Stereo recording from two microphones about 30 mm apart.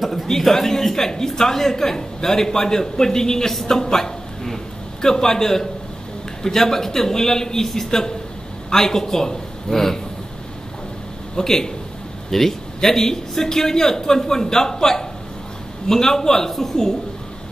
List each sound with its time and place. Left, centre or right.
0.0 s a man's voice: centre
0.3 s a man's voice: centre
11.3 s a man's voice: centre